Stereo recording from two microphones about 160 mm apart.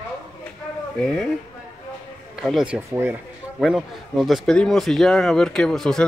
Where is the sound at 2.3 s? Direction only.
5° right (ahead or behind).